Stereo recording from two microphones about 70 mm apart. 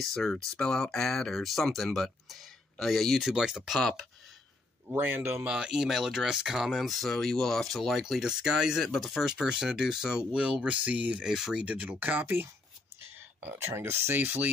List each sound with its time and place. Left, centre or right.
0.0 s speech: centre
4.9 s speech: right
5.5 s speech: centre
11.2 s speech: centre
11.6 s speech: right